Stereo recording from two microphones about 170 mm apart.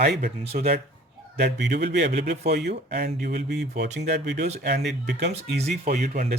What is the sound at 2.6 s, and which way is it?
Speech, 65° right (ahead or behind).